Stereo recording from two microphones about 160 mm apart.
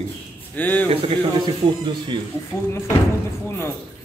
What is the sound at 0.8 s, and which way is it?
Speech, 30° right (ahead or behind).